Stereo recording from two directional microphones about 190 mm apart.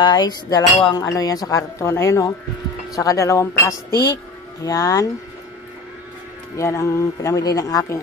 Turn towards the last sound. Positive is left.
turn(degrees=20)  # may be behind; listen again after turning